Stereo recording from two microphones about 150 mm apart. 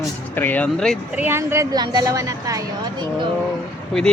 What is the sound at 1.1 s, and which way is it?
A woman's voice, 15° right (ahead or behind).